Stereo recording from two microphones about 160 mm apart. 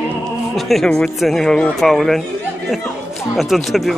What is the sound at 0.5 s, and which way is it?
Speech, centre (ahead or behind).